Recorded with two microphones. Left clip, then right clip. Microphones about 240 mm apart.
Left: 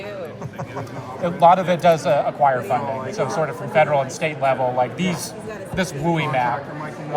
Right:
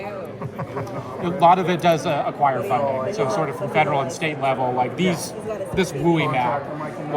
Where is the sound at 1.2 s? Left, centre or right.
Left.